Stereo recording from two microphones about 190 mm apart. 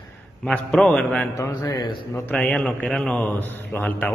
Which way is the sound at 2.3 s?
5° left (ahead or behind).